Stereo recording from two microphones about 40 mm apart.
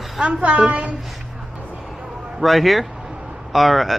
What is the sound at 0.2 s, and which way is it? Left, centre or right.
Speech, right.